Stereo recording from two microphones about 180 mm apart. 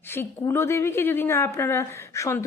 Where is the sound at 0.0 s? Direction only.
15° left (ahead or behind).